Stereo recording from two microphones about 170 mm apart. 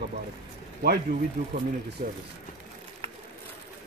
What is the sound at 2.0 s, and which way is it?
Speech, 65° right (ahead or behind).